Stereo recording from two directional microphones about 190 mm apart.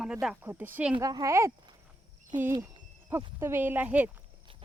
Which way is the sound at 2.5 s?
20° right (ahead or behind).